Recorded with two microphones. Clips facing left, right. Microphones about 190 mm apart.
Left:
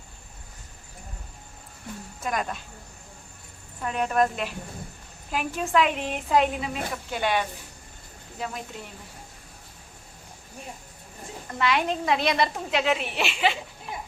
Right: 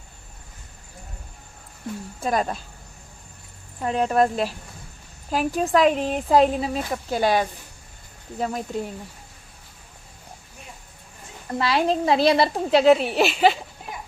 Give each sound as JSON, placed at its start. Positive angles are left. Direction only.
{"t": 2.2, "sound": "a woman's voice", "side_deg": -35}
{"t": 3.8, "sound": "a woman's voice", "side_deg": -30}
{"t": 11.5, "sound": "a woman's voice", "side_deg": -35}